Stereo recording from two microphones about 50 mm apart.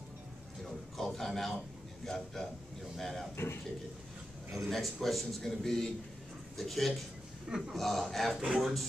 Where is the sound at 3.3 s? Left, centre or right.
Left.